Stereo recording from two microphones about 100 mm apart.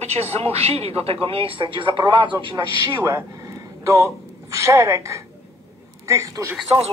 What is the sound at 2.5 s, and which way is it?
Speech, 40° right (ahead or behind).